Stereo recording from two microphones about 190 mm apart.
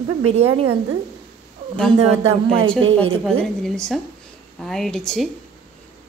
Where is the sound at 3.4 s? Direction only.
5° left (ahead or behind).